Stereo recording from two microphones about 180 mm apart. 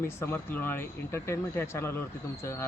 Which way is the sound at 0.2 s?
10° left (ahead or behind).